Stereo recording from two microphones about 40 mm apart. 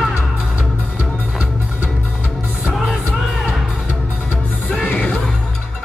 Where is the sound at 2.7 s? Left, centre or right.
Centre.